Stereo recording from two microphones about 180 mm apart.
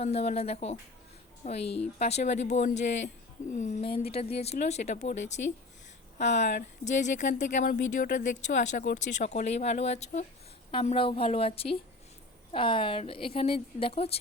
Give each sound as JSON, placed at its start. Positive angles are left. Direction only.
{"t": 0.0, "sound": "a woman's voice", "side_deg": 35}